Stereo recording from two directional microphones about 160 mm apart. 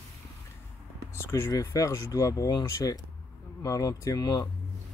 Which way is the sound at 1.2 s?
15° left (ahead or behind).